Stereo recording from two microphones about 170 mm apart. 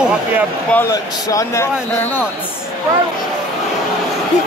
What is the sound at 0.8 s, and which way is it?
Speech, 20° left (ahead or behind).